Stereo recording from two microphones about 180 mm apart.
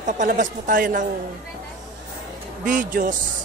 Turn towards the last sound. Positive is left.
turn(degrees=-50)  # may be behind; listen again after turning